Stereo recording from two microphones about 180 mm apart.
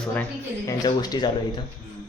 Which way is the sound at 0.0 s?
10° left (ahead or behind).